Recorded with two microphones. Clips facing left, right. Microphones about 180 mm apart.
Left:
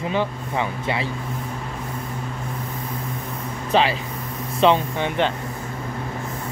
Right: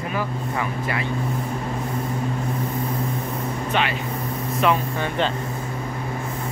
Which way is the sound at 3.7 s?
30° left (ahead or behind).